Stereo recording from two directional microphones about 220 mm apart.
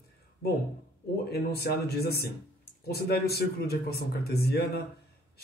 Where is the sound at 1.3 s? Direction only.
45° left (ahead or behind).